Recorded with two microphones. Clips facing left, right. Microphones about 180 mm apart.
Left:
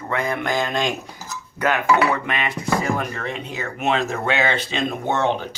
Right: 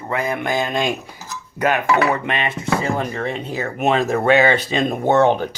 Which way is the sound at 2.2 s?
30° right (ahead or behind).